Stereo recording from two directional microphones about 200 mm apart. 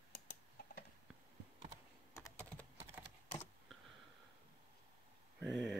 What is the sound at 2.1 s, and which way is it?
Computer keyboard, 10° left (ahead or behind).